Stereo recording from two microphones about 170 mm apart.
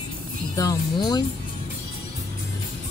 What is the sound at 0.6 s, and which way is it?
Speech, 20° left (ahead or behind).